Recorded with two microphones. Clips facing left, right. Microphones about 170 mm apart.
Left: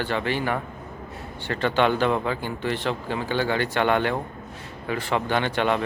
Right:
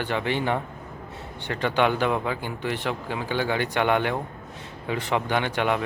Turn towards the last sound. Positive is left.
turn(degrees=-10)  # may be behind; listen again after turning